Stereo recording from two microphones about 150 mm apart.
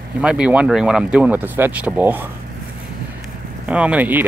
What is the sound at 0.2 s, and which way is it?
Speech, 5° right (ahead or behind).